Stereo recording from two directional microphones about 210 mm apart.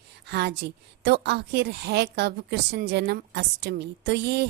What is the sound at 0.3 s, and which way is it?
A woman's voice, 50° right (ahead or behind).